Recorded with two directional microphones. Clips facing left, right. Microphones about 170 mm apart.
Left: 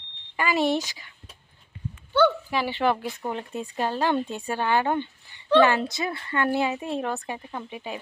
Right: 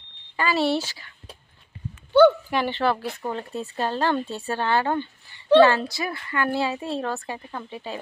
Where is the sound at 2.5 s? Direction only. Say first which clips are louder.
Right 1 dB; 10° left (ahead or behind).